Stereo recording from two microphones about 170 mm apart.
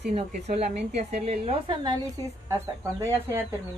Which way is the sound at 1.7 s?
25° right (ahead or behind).